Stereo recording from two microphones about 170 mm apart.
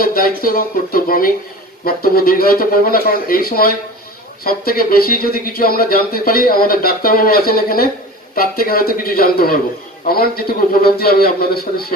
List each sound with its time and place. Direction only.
0.0 s speech: 60° left (ahead or behind)